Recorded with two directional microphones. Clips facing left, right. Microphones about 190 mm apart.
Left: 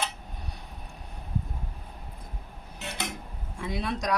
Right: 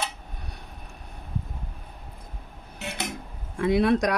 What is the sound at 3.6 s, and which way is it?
Dishes, 65° right (ahead or behind).